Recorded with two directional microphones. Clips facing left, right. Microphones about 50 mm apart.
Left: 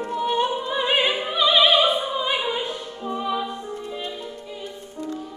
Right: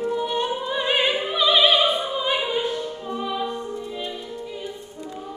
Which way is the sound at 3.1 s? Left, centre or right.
Centre.